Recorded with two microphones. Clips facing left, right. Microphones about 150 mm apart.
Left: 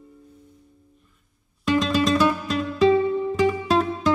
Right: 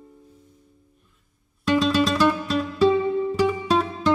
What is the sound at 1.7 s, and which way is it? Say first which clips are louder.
Music: even; centre (ahead or behind).